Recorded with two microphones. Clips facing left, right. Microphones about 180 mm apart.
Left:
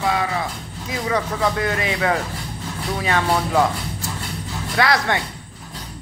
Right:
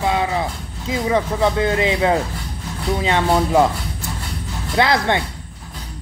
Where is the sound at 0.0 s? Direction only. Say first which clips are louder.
Right 2 dB; 20° right (ahead or behind).